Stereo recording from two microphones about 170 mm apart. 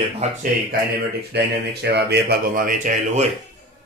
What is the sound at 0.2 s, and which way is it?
Speech, 50° right (ahead or behind).